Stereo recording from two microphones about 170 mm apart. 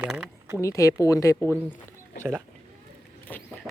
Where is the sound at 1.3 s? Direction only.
5° left (ahead or behind).